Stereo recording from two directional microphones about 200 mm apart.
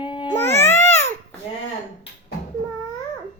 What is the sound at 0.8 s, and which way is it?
Babbling, 35° left (ahead or behind).